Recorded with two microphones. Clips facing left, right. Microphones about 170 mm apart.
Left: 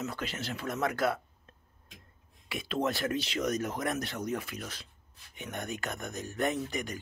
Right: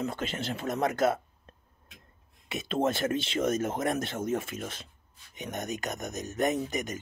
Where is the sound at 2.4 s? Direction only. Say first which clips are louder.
Right 3 dB; 20° right (ahead or behind).